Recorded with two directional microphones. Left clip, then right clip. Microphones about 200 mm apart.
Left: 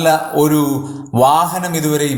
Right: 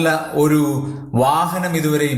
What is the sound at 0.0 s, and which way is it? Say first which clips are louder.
A man's voice: left 4 dB; 25° left (ahead or behind).